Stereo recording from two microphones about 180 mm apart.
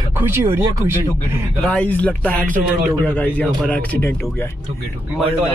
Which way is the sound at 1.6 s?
5° left (ahead or behind).